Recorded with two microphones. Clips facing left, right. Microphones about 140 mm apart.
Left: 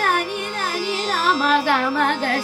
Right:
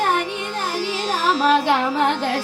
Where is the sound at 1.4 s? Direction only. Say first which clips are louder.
Right 4 dB; 20° right (ahead or behind).